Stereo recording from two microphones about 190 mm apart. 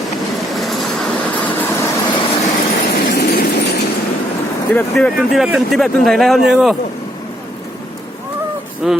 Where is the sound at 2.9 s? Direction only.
55° left (ahead or behind).